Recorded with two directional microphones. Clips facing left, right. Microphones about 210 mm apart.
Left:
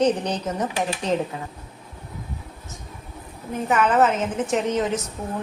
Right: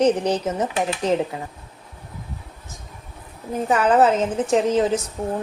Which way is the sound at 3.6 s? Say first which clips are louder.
Right 2 dB; 35° right (ahead or behind).